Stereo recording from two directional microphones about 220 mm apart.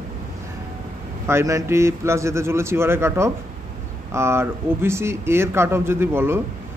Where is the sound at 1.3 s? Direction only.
15° right (ahead or behind).